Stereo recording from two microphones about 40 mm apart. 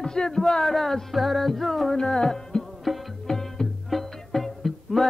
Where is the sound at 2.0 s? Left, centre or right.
Centre.